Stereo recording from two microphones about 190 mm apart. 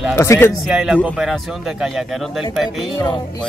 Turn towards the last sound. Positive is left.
turn(degrees=25)  # may be behind; listen again after turning